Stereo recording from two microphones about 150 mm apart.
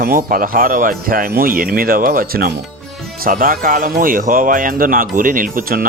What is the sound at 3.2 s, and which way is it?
Speech, 70° right (ahead or behind).